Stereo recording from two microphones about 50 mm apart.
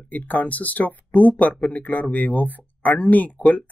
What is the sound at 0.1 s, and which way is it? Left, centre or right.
Speech, left.